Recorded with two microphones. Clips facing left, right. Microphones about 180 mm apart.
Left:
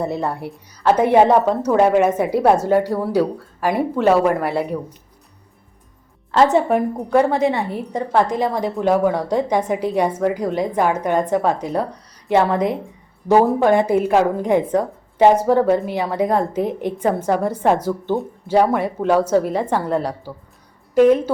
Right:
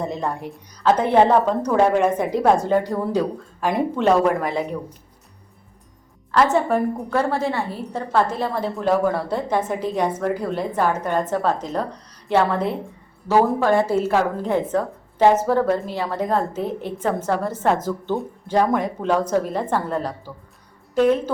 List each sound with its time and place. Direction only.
0.0 s a woman's voice: 10° left (ahead or behind)
6.3 s a woman's voice: 20° left (ahead or behind)